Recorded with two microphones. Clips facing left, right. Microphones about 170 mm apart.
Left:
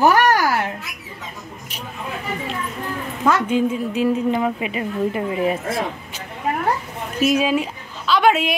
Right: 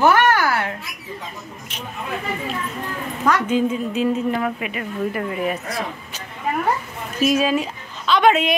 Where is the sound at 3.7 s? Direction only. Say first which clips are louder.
Left 1 dB; 10° left (ahead or behind); by 5.8 s 25° left (ahead or behind).